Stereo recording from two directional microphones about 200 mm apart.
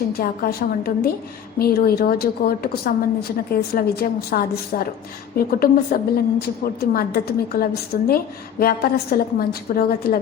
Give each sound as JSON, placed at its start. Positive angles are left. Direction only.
{"t": 0.2, "sound": "a woman's voice", "side_deg": 50}